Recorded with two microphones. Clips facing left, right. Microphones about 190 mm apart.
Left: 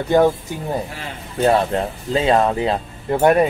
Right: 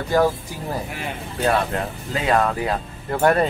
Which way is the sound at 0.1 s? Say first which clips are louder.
Left 4 dB; 20° left (ahead or behind).